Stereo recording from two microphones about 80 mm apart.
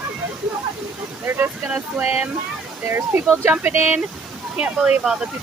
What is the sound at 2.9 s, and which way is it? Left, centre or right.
Speech, right.